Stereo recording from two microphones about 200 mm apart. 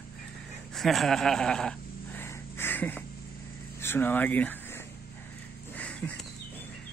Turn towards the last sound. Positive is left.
turn(degrees=5)  # may be behind; listen again after turning